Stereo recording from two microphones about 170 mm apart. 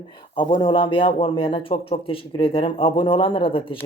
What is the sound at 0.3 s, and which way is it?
Speech, 30° left (ahead or behind).